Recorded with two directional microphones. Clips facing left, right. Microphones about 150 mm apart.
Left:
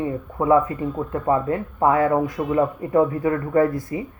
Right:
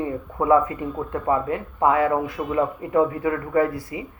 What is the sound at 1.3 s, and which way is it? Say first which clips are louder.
Speech: left 2 dB; 35° left (ahead or behind).